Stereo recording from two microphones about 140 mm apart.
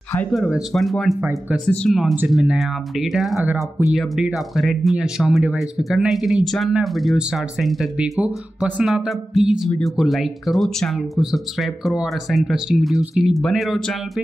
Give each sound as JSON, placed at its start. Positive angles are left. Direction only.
{"t": 0.3, "sound": "speech", "side_deg": 0}